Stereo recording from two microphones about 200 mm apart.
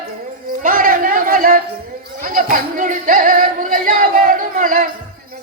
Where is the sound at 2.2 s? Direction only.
45° right (ahead or behind).